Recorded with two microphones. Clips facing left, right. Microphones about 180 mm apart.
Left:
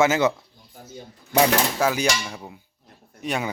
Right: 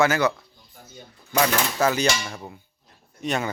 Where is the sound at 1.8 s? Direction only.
10° left (ahead or behind).